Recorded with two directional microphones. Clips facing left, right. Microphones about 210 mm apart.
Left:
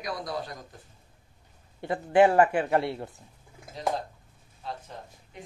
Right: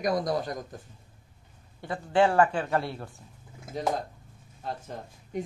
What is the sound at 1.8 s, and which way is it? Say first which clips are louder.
Speech: left 3 dB; 20° left (ahead or behind).